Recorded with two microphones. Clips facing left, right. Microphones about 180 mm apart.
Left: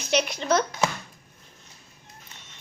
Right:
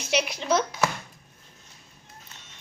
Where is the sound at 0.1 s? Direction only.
5° right (ahead or behind).